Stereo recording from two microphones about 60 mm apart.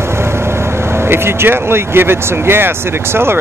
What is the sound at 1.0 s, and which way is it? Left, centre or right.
Speech, right.